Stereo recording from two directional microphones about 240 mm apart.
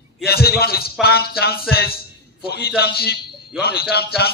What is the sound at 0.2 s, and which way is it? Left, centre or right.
A man's voice, left.